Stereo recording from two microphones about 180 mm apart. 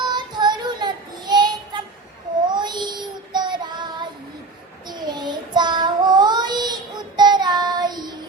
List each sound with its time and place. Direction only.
0.0 s child singing: 25° right (ahead or behind)